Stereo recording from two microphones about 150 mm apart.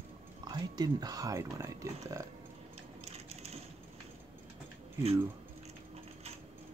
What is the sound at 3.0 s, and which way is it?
Sewing machine, 45° right (ahead or behind).